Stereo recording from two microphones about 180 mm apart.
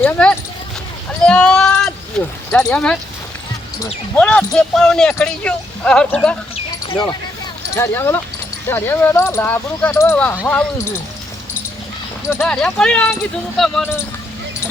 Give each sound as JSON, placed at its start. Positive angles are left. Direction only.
{"t": 0.0, "sound": "speech", "side_deg": 5}
{"t": 1.2, "sound": "sheep", "side_deg": 5}
{"t": 2.6, "sound": "speech", "side_deg": 5}
{"t": 4.2, "sound": "speech", "side_deg": 5}
{"t": 6.9, "sound": "speech", "side_deg": 25}
{"t": 12.3, "sound": "speech", "side_deg": 10}